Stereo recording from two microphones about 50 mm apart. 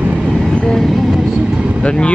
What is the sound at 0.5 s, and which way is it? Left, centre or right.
Vehicle, centre.